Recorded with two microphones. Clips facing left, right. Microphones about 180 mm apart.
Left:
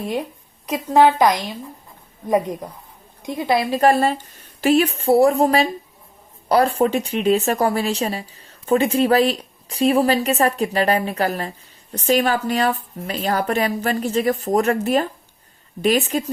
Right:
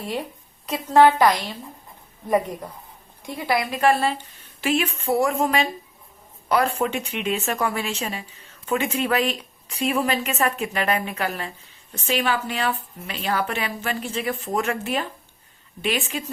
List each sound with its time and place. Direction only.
0.0 s a woman's voice: 20° left (ahead or behind); by 16.2 s 40° left (ahead or behind)